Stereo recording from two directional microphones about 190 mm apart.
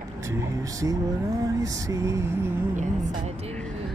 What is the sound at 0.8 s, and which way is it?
Music, 15° right (ahead or behind).